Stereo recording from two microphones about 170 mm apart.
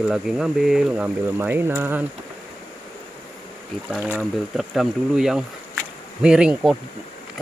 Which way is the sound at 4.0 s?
10° right (ahead or behind).